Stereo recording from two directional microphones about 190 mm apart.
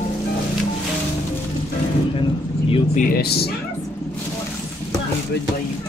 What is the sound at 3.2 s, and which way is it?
Speech, 55° left (ahead or behind).